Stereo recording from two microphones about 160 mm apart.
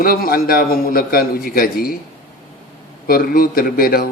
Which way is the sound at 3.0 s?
65° left (ahead or behind).